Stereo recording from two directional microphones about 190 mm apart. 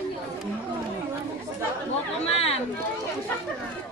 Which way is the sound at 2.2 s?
30° left (ahead or behind).